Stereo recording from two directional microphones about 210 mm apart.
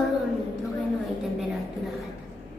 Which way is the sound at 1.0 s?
Centre (ahead or behind).